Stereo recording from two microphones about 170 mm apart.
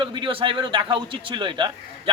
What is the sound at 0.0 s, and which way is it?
A man's voice, 30° right (ahead or behind).